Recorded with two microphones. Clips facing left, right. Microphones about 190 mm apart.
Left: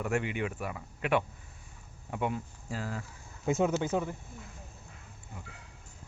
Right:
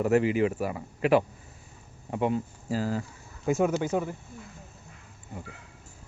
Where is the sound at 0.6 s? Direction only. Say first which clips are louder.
Right 8 dB; 35° right (ahead or behind).